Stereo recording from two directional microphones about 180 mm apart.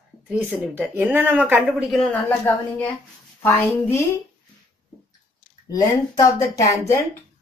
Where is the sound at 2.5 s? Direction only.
10° left (ahead or behind).